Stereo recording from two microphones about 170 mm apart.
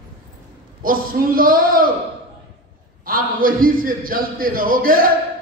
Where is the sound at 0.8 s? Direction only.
55° right (ahead or behind).